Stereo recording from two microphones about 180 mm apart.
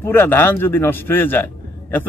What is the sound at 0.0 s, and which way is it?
A man's voice, 10° left (ahead or behind).